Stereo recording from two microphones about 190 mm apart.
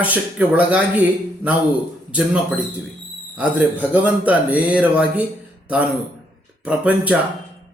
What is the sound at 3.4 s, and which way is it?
Speech, 10° right (ahead or behind).